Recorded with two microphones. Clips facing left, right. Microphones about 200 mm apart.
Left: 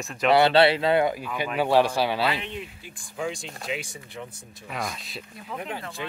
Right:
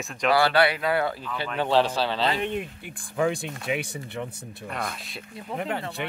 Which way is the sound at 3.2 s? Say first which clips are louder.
Right 6 dB; 60° right (ahead or behind).